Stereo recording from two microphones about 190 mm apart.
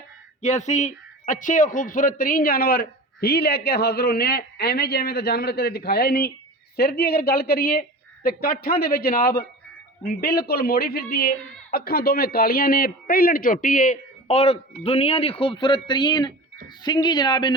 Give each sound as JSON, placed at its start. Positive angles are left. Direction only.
{"t": 0.4, "sound": "a man's voice", "side_deg": 40}